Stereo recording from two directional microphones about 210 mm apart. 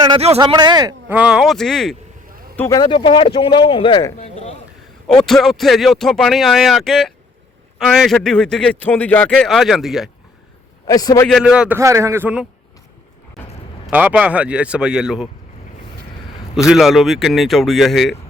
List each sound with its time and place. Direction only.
0.1 s speech: 30° right (ahead or behind); by 2.0 s centre (ahead or behind)
2.6 s speech: 15° left (ahead or behind)
5.2 s speech: centre (ahead or behind)
10.8 s a man's voice: 15° left (ahead or behind)
11.3 s speech: centre (ahead or behind)
13.8 s speech: 5° right (ahead or behind)
16.6 s speech: centre (ahead or behind)